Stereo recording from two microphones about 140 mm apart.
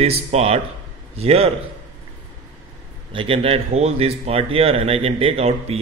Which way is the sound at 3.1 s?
40° right (ahead or behind).